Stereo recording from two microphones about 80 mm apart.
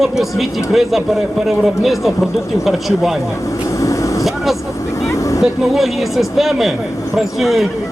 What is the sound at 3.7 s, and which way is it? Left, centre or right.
Vehicle, left.